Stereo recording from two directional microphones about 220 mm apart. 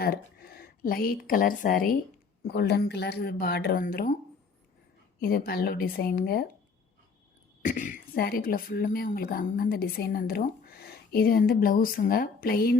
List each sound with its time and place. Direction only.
0.0 s a woman's voice: 45° left (ahead or behind)
5.2 s speech: 45° left (ahead or behind)
7.6 s speech: 35° left (ahead or behind)